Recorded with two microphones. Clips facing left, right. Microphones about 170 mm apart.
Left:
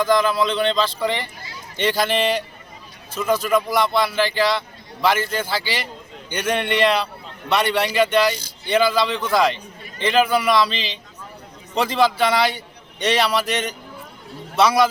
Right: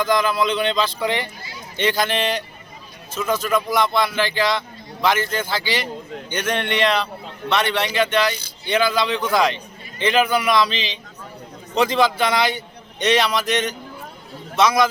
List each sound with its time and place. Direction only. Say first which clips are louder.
0.0 s a man's voice: left 1 dB; centre (ahead or behind)